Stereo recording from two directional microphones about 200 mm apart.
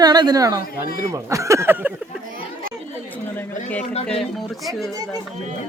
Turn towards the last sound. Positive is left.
turn(degrees=0)  # may be behind; listen again after turning